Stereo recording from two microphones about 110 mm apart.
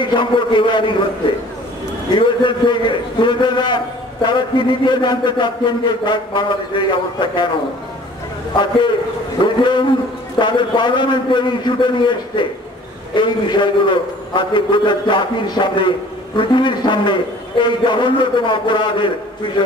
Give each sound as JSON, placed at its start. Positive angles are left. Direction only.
{"t": 0.0, "sound": "a man's voice", "side_deg": 45}
{"t": 2.1, "sound": "a man's voice", "side_deg": 45}
{"t": 9.4, "sound": "a man's voice", "side_deg": 45}